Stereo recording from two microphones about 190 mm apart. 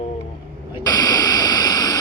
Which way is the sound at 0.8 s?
20° left (ahead or behind).